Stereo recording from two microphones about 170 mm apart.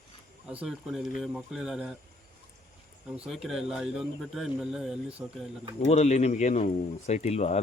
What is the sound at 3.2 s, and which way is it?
A man's voice, centre (ahead or behind).